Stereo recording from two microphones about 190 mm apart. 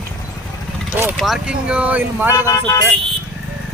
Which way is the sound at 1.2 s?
5° right (ahead or behind).